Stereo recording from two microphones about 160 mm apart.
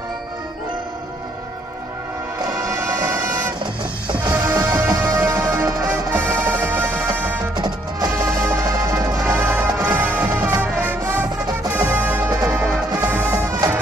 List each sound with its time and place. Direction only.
2.6 s music: 20° right (ahead or behind)
4.3 s music: 15° right (ahead or behind)
7.5 s music: 25° right (ahead or behind)